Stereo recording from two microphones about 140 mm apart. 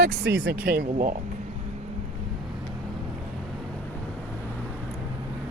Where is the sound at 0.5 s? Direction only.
90° right.